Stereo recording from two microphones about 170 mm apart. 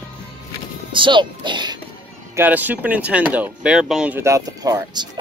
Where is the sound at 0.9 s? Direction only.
30° right (ahead or behind).